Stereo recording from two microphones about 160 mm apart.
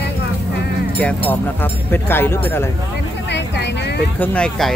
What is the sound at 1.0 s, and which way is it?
Speech, 10° left (ahead or behind).